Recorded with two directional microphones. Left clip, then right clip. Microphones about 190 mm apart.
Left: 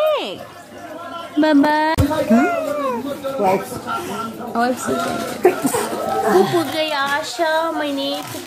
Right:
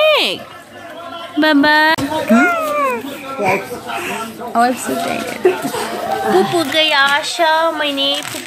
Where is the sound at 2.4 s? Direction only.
25° left (ahead or behind).